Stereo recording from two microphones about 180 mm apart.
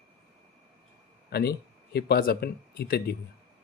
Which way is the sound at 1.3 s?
60° left (ahead or behind).